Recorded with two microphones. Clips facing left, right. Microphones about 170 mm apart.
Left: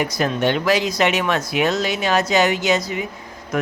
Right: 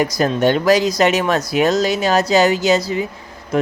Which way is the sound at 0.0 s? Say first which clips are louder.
Right 4 dB; 40° right (ahead or behind).